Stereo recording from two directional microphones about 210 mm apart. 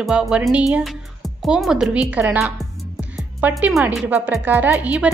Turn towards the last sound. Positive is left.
turn(degrees=-5)  # may be behind; listen again after turning